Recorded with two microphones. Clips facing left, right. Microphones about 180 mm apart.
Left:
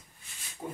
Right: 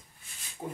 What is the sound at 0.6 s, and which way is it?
Rub, 20° right (ahead or behind).